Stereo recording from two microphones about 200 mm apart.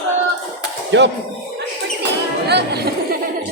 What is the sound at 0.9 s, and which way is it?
Speech, 65° right (ahead or behind).